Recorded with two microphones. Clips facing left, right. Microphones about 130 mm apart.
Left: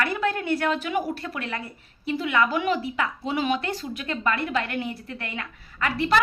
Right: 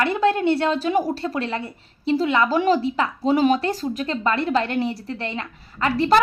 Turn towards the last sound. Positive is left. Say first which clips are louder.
# right 5 dB
turn(degrees=-35)  # may be behind; listen again after turning